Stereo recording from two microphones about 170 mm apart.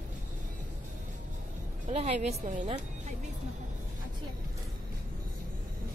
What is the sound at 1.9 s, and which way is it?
Speech, 40° right (ahead or behind).